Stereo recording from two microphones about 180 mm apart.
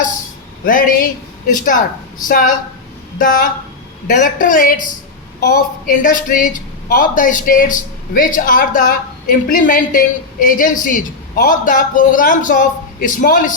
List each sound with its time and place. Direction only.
0.6 s a woman's voice: 50° left (ahead or behind)